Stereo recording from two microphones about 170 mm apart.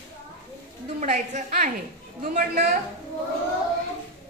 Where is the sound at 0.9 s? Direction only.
50° right (ahead or behind).